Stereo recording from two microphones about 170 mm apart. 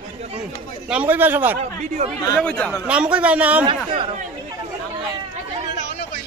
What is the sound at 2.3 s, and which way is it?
Speech, 5° left (ahead or behind).